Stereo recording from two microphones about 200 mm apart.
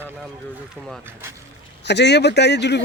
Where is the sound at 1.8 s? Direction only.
60° left (ahead or behind).